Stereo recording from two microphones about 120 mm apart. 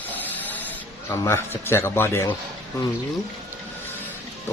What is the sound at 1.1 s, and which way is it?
A man's voice, 20° left (ahead or behind).